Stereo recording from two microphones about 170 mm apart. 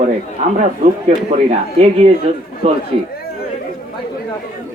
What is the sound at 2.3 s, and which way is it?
Speech, 35° right (ahead or behind).